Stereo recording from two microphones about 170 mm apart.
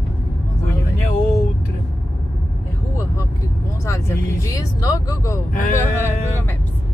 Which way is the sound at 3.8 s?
15° left (ahead or behind).